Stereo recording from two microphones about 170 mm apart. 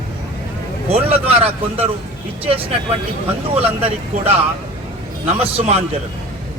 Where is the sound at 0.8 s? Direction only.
35° right (ahead or behind).